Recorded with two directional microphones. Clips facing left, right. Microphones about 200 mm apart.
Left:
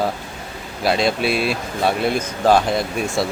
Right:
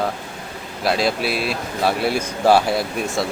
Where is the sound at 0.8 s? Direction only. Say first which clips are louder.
Left 2 dB; centre (ahead or behind).